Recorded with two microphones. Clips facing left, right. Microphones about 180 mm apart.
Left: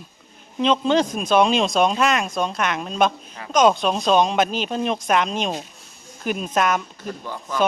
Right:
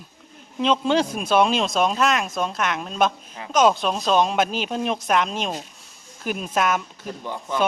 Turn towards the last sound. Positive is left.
turn(degrees=-25)  # may be behind; listen again after turning